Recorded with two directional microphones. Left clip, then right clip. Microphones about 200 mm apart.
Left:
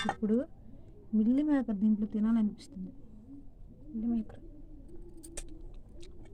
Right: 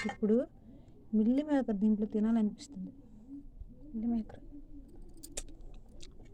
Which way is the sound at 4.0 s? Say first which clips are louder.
Left 1 dB; 10° right (ahead or behind).